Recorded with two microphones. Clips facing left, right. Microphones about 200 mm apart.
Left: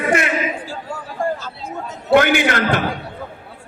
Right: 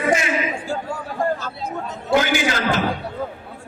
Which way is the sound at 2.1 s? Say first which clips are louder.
Left 5 dB; 60° left (ahead or behind).